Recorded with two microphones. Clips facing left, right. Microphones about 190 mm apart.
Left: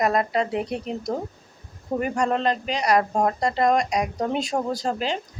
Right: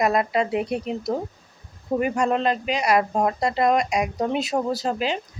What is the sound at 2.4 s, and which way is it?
Speech, 35° left (ahead or behind).